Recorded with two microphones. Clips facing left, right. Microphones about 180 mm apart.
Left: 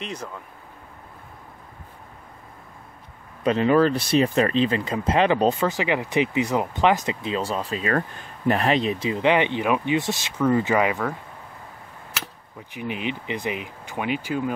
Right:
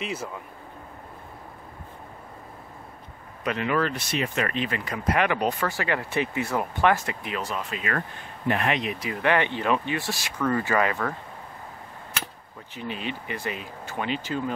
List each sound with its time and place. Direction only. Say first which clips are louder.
0.0 s speech: right 1 dB; 5° right (ahead or behind)
3.4 s speech: left 7 dB; 30° left (ahead or behind)
12.7 s speech: left 4 dB; 15° left (ahead or behind)